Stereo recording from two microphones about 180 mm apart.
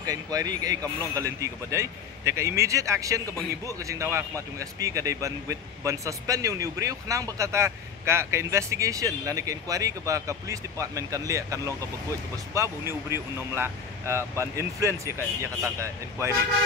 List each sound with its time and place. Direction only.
0.0 s speech: 20° right (ahead or behind)